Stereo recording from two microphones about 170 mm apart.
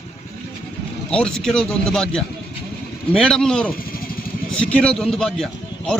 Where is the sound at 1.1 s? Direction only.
5° left (ahead or behind).